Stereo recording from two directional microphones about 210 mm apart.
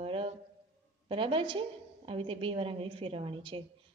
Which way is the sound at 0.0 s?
25° right (ahead or behind).